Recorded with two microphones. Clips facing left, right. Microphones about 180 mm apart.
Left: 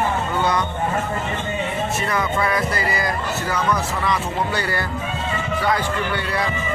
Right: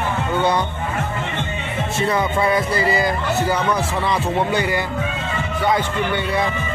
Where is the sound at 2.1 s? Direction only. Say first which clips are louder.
Right 4 dB; 25° right (ahead or behind).